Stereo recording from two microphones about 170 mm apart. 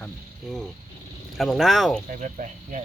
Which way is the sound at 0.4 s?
Centre (ahead or behind).